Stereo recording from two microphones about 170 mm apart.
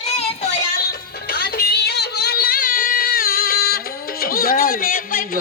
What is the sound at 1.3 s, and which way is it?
Music, 65° left (ahead or behind).